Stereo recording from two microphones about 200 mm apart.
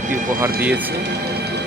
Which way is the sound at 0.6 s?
10° right (ahead or behind).